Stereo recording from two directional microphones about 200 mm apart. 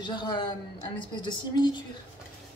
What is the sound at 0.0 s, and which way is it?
A woman's voice, 20° left (ahead or behind).